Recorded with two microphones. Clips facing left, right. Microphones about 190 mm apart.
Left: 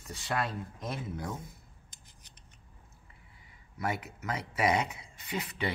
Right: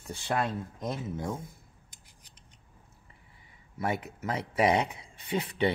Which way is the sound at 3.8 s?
30° right (ahead or behind).